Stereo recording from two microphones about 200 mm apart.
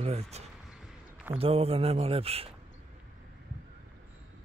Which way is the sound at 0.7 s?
5° right (ahead or behind).